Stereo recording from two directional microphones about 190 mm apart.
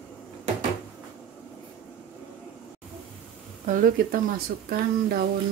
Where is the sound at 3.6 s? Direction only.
45° right (ahead or behind).